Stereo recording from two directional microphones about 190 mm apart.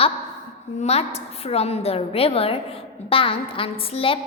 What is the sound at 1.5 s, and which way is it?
A woman's voice, 35° left (ahead or behind).